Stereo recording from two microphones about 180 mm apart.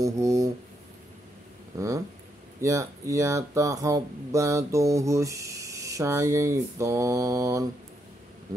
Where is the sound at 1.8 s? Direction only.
15° right (ahead or behind).